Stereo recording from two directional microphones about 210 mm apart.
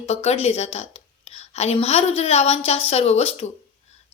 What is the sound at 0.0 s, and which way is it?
A woman's voice, 30° left (ahead or behind).